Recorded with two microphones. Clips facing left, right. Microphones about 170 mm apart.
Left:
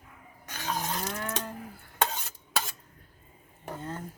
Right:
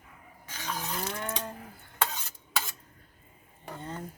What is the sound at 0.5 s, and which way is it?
Vehicle, 40° left (ahead or behind).